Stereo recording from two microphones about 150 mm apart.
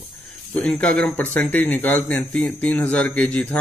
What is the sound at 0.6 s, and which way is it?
Speech, 10° left (ahead or behind).